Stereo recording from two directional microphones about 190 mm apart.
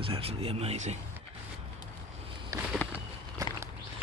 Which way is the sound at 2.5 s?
15° right (ahead or behind).